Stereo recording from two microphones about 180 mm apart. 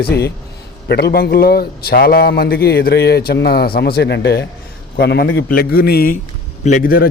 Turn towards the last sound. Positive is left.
turn(degrees=55)  # may be behind; listen again after turning